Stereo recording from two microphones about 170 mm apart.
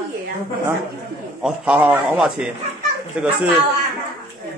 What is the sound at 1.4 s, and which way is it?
A man's voice, 5° right (ahead or behind).